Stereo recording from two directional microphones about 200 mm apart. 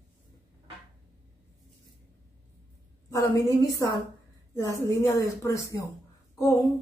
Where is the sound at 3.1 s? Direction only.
15° left (ahead or behind).